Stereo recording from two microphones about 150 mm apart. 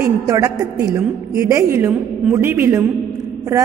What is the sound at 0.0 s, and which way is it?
A woman's voice, 20° right (ahead or behind).